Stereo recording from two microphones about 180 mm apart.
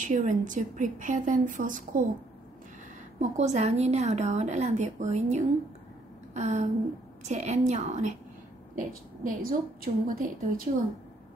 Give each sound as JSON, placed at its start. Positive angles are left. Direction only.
{"t": 0.0, "sound": "a woman's voice", "side_deg": -45}
{"t": 3.2, "sound": "a woman's voice", "side_deg": -40}
{"t": 8.7, "sound": "a woman's voice", "side_deg": -55}